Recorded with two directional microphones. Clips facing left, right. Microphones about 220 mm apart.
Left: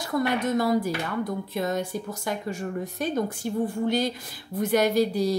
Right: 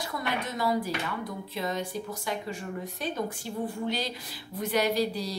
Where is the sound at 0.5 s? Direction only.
50° left (ahead or behind).